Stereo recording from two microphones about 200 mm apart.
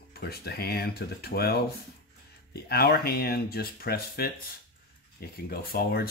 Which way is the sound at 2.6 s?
50° left (ahead or behind).